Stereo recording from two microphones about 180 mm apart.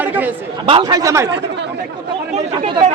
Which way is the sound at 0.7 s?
30° right (ahead or behind).